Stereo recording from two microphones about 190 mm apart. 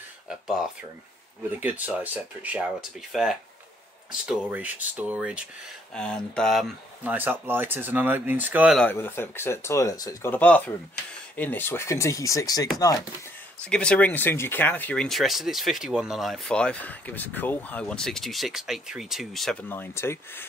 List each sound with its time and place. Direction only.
0.3 s speech: 5° right (ahead or behind)
5.9 s speech: 5° left (ahead or behind)
8.7 s speech: 10° left (ahead or behind)
13.6 s speech: 5° left (ahead or behind)